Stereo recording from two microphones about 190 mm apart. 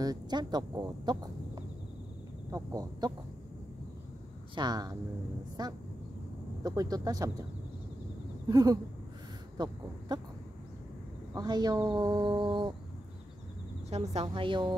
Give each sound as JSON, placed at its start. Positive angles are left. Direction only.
{"t": 0.0, "sound": "speech", "side_deg": -20}
{"t": 4.6, "sound": "speech", "side_deg": -20}
{"t": 8.5, "sound": "speech", "side_deg": -20}
{"t": 11.3, "sound": "speech", "side_deg": -20}
{"t": 13.8, "sound": "speech", "side_deg": -35}